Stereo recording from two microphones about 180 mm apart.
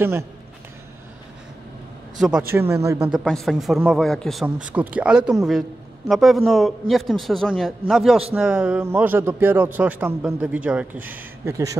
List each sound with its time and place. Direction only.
2.1 s a man's voice: 5° right (ahead or behind)
2.7 s a man's voice: 15° right (ahead or behind)
3.1 s a man's voice: centre (ahead or behind); by 11.7 s 15° right (ahead or behind)